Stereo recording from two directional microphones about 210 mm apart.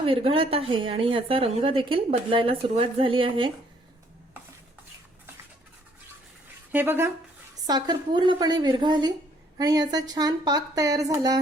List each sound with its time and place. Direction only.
0.0 s a woman's voice: 25° right (ahead or behind)
6.7 s a woman's voice: 10° right (ahead or behind)